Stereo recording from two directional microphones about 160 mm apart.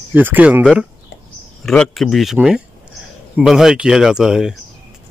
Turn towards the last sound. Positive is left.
turn(degrees=-5)  # may be behind; listen again after turning